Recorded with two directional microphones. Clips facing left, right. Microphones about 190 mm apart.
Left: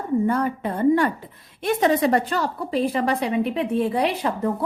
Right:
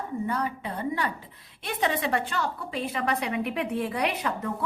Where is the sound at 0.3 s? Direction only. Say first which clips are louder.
Left 7 dB; 50° left (ahead or behind).